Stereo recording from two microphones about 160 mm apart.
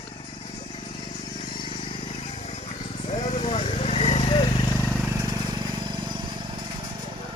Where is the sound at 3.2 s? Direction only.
40° left (ahead or behind).